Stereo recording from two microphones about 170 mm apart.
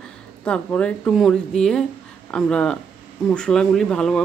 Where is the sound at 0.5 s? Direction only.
5° left (ahead or behind).